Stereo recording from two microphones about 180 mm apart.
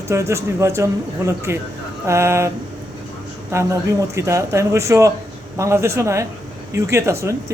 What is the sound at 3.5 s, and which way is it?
A man's voice, 15° right (ahead or behind).